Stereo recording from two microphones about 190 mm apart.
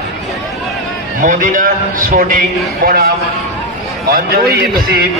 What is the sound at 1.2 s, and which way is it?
A man's voice, 45° right (ahead or behind).